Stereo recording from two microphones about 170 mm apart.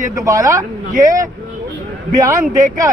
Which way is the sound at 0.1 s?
20° right (ahead or behind).